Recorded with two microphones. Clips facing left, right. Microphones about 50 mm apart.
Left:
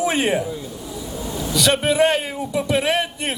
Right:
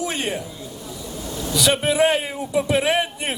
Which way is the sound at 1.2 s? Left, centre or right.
Centre.